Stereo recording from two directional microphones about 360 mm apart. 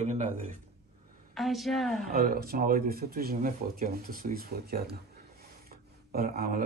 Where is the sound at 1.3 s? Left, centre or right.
Centre.